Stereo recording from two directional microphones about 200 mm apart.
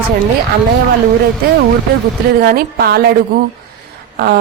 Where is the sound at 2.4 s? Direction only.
50° right (ahead or behind).